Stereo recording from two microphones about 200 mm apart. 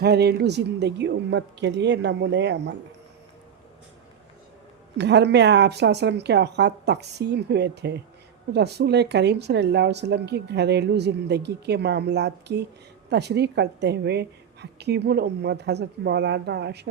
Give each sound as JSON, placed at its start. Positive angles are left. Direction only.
{"t": 0.0, "sound": "speech", "side_deg": -55}
{"t": 4.9, "sound": "speech", "side_deg": -60}